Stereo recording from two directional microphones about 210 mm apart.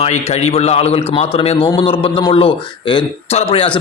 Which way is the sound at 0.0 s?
30° left (ahead or behind).